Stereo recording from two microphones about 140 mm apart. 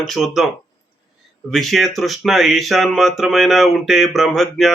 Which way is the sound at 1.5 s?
Centre (ahead or behind).